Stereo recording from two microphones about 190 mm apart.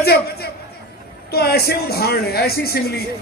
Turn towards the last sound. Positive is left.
turn(degrees=55)  # may be behind; listen again after turning